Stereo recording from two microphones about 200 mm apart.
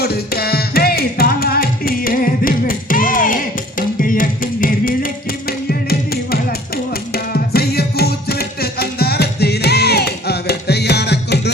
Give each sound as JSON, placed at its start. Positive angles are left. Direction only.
{"t": 0.0, "sound": "music", "side_deg": 50}